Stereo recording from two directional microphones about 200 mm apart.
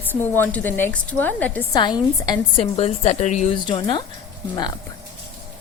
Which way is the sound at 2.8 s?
30° left (ahead or behind).